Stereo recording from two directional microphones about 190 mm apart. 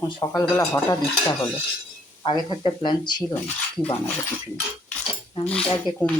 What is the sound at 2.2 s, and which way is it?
Speech, 20° left (ahead or behind).